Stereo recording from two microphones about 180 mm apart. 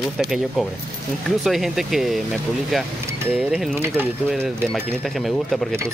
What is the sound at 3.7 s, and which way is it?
Speech, 10° right (ahead or behind).